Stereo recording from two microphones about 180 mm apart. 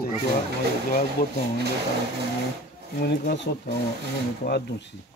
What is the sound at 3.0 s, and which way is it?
Speech, 60° left (ahead or behind).